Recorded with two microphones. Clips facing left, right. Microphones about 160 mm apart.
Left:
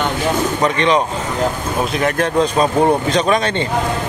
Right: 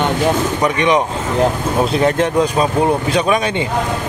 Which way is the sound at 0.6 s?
15° right (ahead or behind).